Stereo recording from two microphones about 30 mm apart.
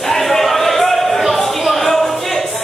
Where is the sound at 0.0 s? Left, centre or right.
Centre.